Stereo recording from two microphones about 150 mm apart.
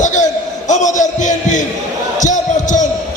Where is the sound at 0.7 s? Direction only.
55° left (ahead or behind).